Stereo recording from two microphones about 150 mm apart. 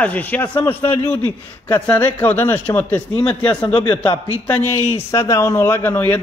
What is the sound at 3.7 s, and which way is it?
Speech, 30° left (ahead or behind).